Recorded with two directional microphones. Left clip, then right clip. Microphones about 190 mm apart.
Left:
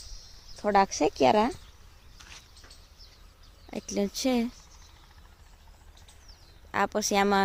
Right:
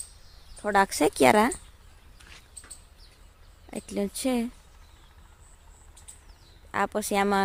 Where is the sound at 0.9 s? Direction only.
15° right (ahead or behind).